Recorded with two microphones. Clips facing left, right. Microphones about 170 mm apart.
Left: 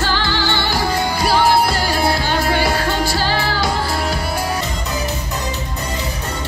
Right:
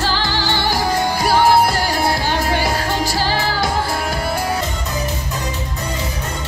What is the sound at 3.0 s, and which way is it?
Music, 40° right (ahead or behind).